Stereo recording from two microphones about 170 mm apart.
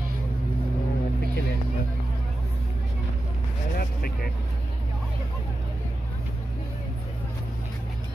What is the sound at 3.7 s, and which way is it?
Vehicle, 60° left (ahead or behind).